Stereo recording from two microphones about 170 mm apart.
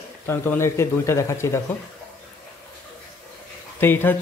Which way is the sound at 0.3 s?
15° left (ahead or behind).